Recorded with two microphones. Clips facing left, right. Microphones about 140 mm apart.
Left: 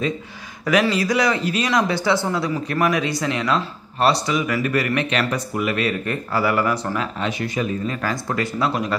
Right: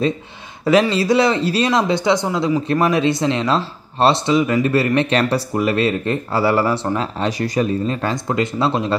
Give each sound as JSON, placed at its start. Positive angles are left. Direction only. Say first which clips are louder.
{"t": 0.7, "sound": "speech", "louder": "right 4 dB", "side_deg": -30}